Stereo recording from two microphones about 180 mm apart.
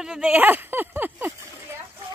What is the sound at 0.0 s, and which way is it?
Speech, 5° right (ahead or behind).